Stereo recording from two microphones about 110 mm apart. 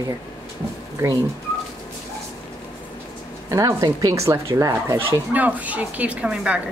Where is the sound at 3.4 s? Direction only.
30° right (ahead or behind).